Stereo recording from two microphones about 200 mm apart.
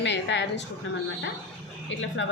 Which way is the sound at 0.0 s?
65° left (ahead or behind).